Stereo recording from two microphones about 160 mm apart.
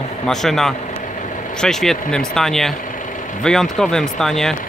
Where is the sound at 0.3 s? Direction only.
Centre (ahead or behind).